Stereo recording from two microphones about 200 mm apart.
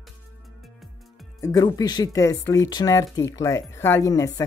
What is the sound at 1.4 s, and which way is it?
Speech, 20° left (ahead or behind).